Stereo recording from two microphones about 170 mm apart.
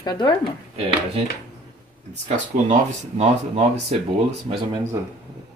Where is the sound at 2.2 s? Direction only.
45° right (ahead or behind).